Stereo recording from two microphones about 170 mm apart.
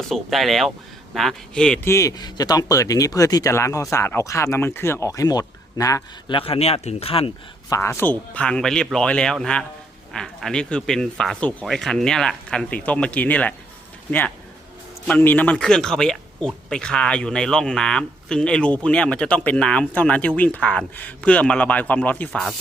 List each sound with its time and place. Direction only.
0.1 s speech: centre (ahead or behind); by 7.3 s 35° left (ahead or behind)
7.7 s speech: 15° left (ahead or behind)